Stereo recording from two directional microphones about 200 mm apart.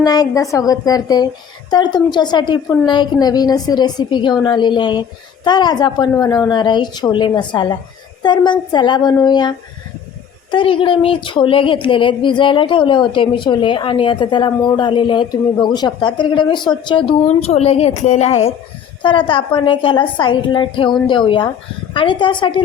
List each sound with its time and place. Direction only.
0.0 s a woman's voice: 20° left (ahead or behind); by 18.3 s 35° left (ahead or behind)
19.0 s speech: 25° left (ahead or behind)